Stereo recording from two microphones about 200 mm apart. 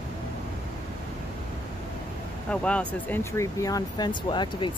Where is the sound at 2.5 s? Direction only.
5° left (ahead or behind).